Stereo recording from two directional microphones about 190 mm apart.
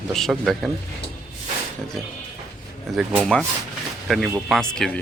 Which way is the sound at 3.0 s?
5° right (ahead or behind).